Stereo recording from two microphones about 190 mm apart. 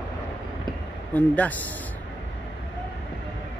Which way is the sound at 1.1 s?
10° left (ahead or behind).